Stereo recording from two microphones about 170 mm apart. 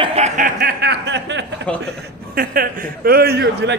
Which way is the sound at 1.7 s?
5° left (ahead or behind).